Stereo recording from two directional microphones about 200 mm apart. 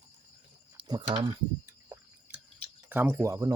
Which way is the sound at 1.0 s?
25° right (ahead or behind).